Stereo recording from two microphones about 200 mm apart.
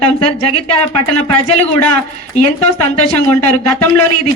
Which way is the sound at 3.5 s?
10° left (ahead or behind).